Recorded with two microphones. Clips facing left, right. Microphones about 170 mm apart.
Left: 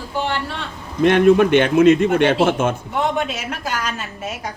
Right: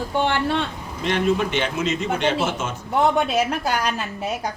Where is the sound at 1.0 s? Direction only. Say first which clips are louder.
Left 9 dB; 55° left (ahead or behind).